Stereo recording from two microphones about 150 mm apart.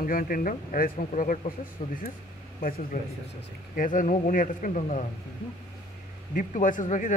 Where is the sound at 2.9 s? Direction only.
90° left.